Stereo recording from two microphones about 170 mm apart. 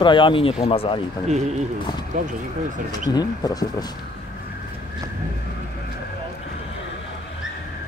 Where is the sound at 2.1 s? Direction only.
50° right (ahead or behind).